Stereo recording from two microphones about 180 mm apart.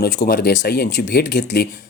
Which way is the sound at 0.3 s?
65° left (ahead or behind).